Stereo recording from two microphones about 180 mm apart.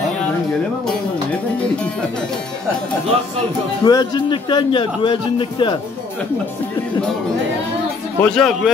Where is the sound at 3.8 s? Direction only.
25° left (ahead or behind).